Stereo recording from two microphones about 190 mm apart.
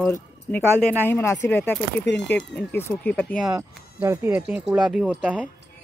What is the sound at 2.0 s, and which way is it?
Speech, 65° left (ahead or behind).